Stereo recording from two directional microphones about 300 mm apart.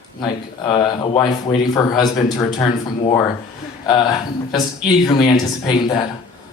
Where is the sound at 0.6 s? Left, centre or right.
Centre.